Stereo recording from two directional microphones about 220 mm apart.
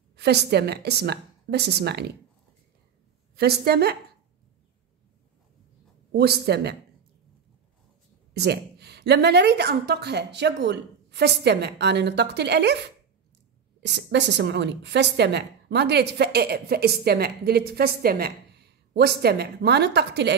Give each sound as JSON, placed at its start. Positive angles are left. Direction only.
{"t": 0.1, "sound": "a woman's voice", "side_deg": -50}
{"t": 3.3, "sound": "a woman's voice", "side_deg": -45}
{"t": 6.1, "sound": "a woman's voice", "side_deg": -45}
{"t": 8.4, "sound": "a woman's voice", "side_deg": -50}
{"t": 13.8, "sound": "a woman's voice", "side_deg": -55}